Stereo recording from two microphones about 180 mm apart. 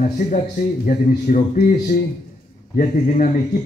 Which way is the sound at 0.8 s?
45° left (ahead or behind).